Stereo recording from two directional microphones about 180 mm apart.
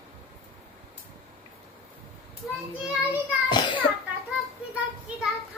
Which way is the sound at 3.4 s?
25° left (ahead or behind).